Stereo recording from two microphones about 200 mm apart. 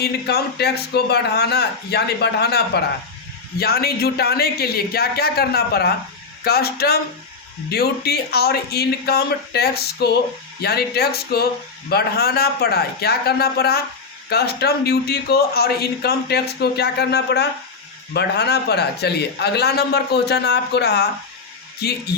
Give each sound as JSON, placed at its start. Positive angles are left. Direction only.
{"t": 0.0, "sound": "a man's voice", "side_deg": 55}